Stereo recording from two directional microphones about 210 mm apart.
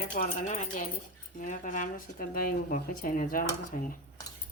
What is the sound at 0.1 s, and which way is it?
Speech, 35° left (ahead or behind).